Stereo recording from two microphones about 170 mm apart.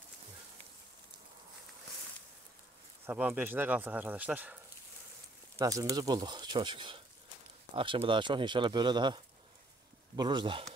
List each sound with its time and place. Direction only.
3.1 s speech: 10° right (ahead or behind)
5.6 s speech: 20° right (ahead or behind)